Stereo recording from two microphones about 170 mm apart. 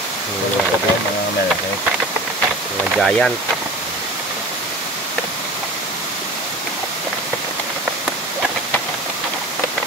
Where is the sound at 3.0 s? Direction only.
Centre (ahead or behind).